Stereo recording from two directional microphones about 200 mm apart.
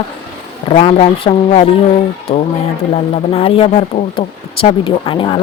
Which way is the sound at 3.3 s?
30° left (ahead or behind).